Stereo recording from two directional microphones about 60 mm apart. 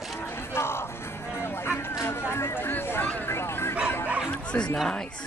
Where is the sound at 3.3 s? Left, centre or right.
Left.